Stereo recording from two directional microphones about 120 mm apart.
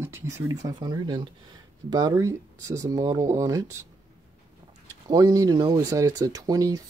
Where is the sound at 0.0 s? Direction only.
20° right (ahead or behind); by 1.3 s 40° right (ahead or behind).